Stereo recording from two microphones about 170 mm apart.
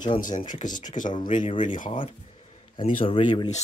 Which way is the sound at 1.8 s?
30° left (ahead or behind).